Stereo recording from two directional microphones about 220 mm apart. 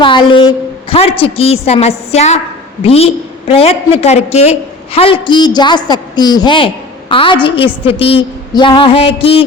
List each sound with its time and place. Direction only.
0.0 s a woman's voice: 20° left (ahead or behind)